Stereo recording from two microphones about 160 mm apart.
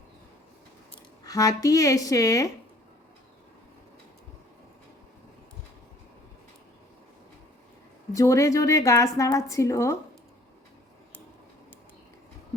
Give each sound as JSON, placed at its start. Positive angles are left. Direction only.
{"t": 1.2, "sound": "a woman's voice", "side_deg": 20}
{"t": 8.1, "sound": "a woman's voice", "side_deg": 20}